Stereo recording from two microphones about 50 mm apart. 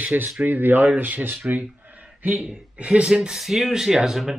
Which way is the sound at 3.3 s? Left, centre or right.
Centre.